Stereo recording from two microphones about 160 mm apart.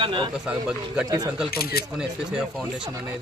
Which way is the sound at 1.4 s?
75° left (ahead or behind).